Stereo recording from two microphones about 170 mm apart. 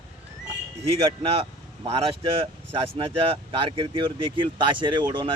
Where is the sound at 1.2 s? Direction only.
35° right (ahead or behind).